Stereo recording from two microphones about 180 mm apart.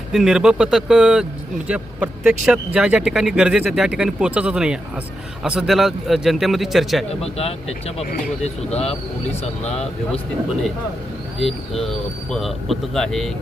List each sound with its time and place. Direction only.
0.1 s speech: centre (ahead or behind)
7.2 s speech: 35° left (ahead or behind)
11.3 s speech: centre (ahead or behind)